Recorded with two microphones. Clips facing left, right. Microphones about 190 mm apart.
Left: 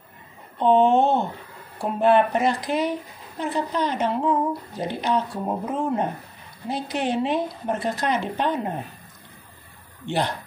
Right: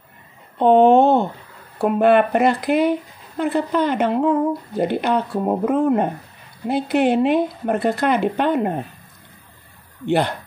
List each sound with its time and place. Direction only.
0.6 s a sound: 60° right (ahead or behind)
1.8 s speech: 60° right (ahead or behind)
10.0 s speech: 60° right (ahead or behind)